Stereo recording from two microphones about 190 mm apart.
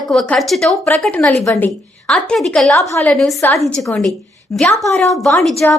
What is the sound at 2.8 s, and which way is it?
Speech, 15° left (ahead or behind).